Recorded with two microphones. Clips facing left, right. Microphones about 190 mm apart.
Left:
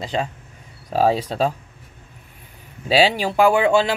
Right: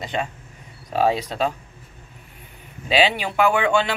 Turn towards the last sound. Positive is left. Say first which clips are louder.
# left 4 dB
turn(degrees=40)  # may be behind; listen again after turning